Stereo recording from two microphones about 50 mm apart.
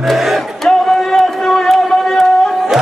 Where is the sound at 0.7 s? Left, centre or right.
Centre.